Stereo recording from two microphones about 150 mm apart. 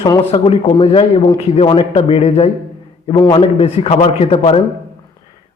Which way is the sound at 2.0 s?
40° left (ahead or behind).